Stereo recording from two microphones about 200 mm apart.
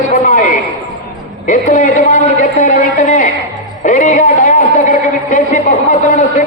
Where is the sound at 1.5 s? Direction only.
40° left (ahead or behind).